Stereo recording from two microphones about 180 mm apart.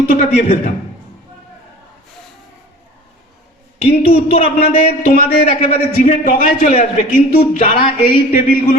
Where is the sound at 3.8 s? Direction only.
35° left (ahead or behind).